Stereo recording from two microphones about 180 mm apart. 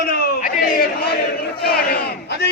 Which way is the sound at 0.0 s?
55° left (ahead or behind).